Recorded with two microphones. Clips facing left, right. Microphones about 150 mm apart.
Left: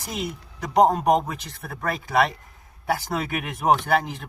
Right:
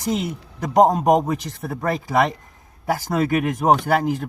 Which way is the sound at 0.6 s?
45° right (ahead or behind).